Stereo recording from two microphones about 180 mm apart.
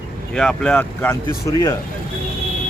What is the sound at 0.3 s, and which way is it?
Speech, 5° left (ahead or behind).